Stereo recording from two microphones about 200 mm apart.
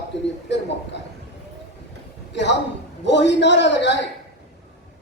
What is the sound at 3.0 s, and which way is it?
Speech, 60° left (ahead or behind).